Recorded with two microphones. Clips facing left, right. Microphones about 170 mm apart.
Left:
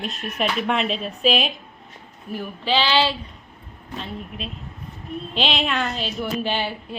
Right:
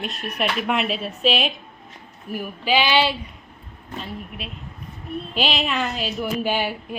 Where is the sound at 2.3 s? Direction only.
10° right (ahead or behind).